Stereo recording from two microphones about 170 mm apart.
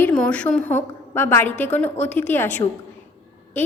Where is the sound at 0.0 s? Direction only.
5° left (ahead or behind).